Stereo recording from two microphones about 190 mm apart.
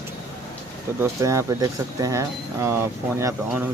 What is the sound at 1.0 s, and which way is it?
Speech, 15° right (ahead or behind).